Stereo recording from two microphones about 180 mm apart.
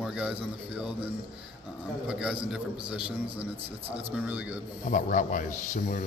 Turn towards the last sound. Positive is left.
turn(degrees=50)  # may be behind; listen again after turning